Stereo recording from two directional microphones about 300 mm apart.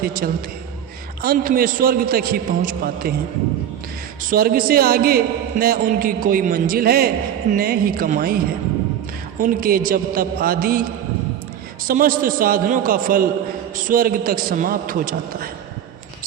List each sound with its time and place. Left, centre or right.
0.0 s a man's voice: right
4.3 s a man's voice: right
9.4 s a man's voice: right
11.9 s a man's voice: right